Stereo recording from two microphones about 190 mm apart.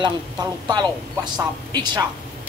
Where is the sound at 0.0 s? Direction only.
20° right (ahead or behind).